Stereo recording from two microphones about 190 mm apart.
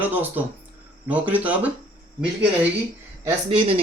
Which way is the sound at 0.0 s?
10° right (ahead or behind).